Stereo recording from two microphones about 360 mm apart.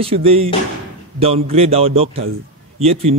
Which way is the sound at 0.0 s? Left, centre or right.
Centre.